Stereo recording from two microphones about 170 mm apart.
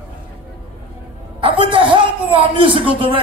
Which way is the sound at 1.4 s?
30° right (ahead or behind).